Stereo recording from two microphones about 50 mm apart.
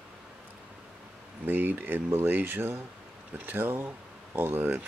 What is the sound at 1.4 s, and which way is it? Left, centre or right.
Speech, right.